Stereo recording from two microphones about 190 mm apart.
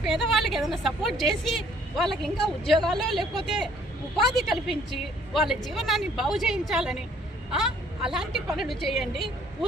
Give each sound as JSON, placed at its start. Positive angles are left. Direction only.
{"t": 0.0, "sound": "a woman's voice", "side_deg": 0}
{"t": 8.0, "sound": "a woman's voice", "side_deg": -5}